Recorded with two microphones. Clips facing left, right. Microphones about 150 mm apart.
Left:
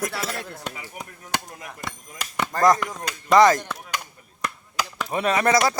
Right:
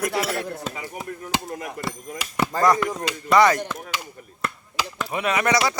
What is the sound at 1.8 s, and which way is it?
Chop, 5° right (ahead or behind).